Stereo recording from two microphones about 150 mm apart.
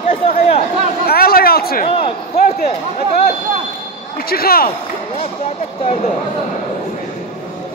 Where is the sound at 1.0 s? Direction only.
90° left.